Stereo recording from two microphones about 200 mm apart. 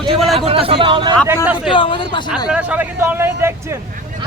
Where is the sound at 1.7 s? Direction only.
25° left (ahead or behind).